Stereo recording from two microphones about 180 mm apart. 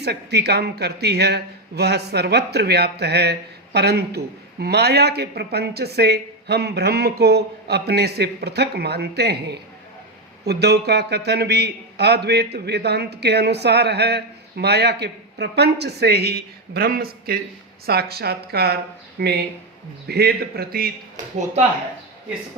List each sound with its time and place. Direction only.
0.0 s a man's voice: 65° right (ahead or behind)